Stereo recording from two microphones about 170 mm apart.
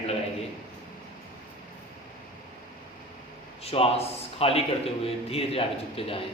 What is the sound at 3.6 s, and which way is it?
A man's voice, 35° left (ahead or behind).